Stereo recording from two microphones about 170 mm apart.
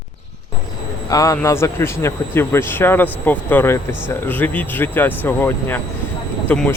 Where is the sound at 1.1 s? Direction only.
20° left (ahead or behind).